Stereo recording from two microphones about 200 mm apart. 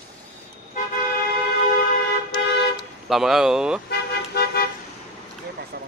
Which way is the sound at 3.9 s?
50° left (ahead or behind).